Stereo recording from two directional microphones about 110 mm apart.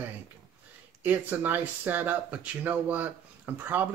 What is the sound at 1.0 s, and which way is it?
Speech, 15° right (ahead or behind).